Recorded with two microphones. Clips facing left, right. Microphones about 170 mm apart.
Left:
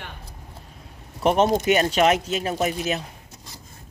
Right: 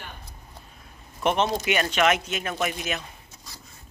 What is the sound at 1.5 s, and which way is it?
Speech, 40° left (ahead or behind).